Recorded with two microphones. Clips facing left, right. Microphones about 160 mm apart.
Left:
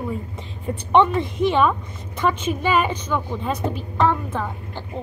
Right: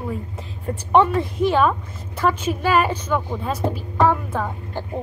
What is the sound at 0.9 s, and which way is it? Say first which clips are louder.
A woman's voice: even; 5° right (ahead or behind).